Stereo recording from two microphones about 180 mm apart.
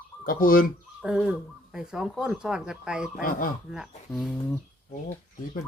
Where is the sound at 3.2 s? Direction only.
50° left (ahead or behind).